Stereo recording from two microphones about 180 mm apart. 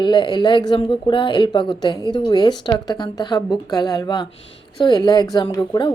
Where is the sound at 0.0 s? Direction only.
25° left (ahead or behind).